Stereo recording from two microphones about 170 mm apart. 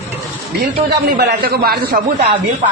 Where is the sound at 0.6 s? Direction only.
65° right (ahead or behind).